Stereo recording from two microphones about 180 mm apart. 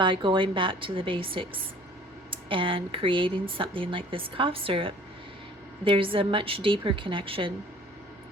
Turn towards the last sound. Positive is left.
turn(degrees=-30)  # may be behind; listen again after turning